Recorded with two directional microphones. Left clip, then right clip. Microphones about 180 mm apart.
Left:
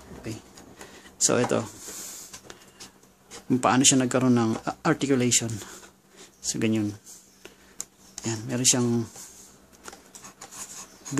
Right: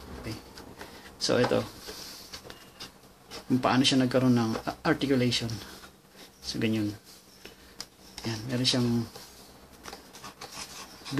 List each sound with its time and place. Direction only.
1.2 s speech: 35° left (ahead or behind)
3.4 s speech: 40° left (ahead or behind)
8.3 s speech: 40° left (ahead or behind)